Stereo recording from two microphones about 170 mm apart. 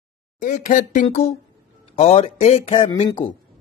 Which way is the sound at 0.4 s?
50° left (ahead or behind).